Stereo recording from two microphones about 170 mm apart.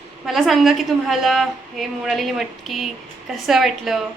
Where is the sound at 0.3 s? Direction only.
Centre (ahead or behind).